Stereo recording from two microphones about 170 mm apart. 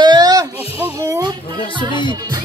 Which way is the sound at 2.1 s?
20° right (ahead or behind).